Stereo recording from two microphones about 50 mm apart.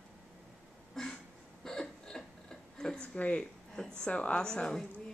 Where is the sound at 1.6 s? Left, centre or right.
Centre.